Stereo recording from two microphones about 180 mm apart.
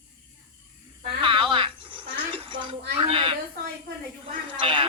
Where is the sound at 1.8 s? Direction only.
25° right (ahead or behind).